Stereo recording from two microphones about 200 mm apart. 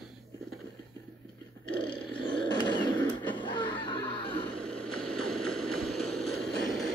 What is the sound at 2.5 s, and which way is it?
Wild animals, 20° left (ahead or behind).